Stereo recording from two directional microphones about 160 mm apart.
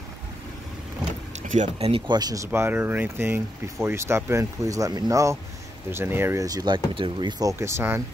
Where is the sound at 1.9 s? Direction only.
30° right (ahead or behind); by 8.0 s 15° right (ahead or behind).